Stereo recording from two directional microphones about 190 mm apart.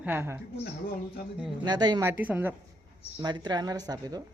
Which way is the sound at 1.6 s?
20° right (ahead or behind).